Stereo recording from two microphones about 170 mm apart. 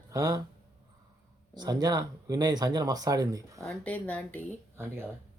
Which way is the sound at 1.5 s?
25° right (ahead or behind).